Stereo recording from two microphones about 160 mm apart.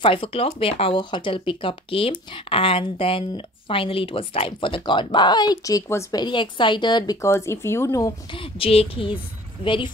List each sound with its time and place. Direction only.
0.0 s speech: 35° left (ahead or behind)
6.2 s speech: 30° left (ahead or behind)
8.4 s speech: 35° left (ahead or behind)